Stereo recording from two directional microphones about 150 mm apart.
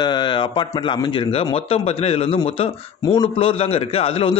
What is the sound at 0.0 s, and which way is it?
A man's voice, 30° left (ahead or behind).